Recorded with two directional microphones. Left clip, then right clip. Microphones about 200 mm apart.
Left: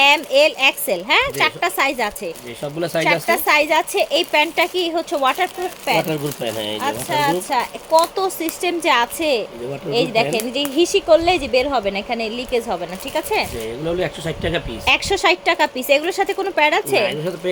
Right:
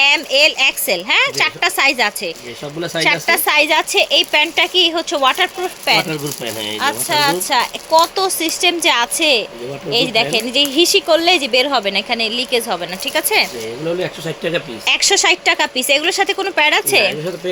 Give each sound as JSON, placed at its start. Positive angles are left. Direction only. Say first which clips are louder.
{"t": 0.0, "sound": "speech", "louder": "right 1 dB", "side_deg": 0}
{"t": 6.1, "sound": "speech", "louder": "even", "side_deg": 15}
{"t": 6.7, "sound": "speech", "louder": "right 6 dB", "side_deg": -10}